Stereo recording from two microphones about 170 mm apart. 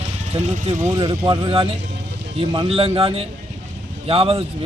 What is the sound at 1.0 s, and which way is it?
Speech, 25° right (ahead or behind).